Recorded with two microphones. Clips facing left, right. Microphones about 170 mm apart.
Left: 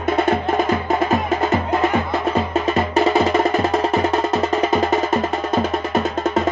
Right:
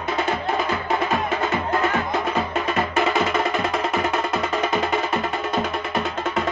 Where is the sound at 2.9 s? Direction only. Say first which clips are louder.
Left 6 dB; 35° left (ahead or behind).